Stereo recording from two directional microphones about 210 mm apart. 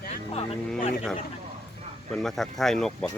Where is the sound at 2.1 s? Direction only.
Centre (ahead or behind).